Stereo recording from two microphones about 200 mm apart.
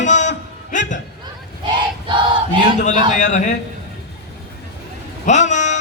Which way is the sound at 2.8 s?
35° left (ahead or behind).